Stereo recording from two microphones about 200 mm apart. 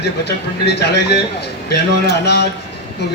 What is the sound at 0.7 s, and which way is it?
A man's voice, 55° left (ahead or behind).